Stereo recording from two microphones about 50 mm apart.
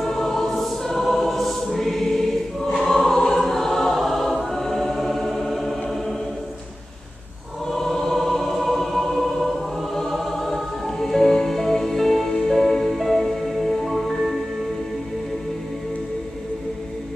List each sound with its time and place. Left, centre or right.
0.0 s choir: centre
7.7 s music: centre